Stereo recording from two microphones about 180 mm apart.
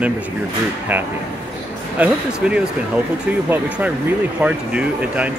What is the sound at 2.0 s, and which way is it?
Speech, 5° right (ahead or behind).